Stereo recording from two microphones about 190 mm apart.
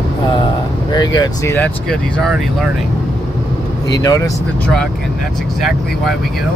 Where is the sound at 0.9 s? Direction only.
20° left (ahead or behind); by 2.7 s centre (ahead or behind).